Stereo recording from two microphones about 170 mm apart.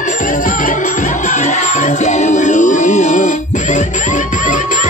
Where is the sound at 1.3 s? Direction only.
45° left (ahead or behind).